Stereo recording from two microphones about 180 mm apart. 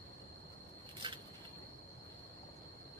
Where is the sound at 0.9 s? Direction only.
30° right (ahead or behind).